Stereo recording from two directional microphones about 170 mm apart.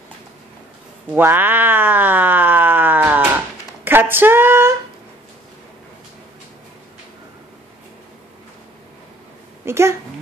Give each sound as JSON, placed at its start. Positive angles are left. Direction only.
{"t": 1.1, "sound": "a sound", "side_deg": -10}
{"t": 3.8, "sound": "female singing", "side_deg": -10}
{"t": 9.7, "sound": "speech", "side_deg": -15}